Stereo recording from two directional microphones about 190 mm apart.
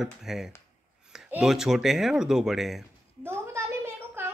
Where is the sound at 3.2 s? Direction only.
15° right (ahead or behind).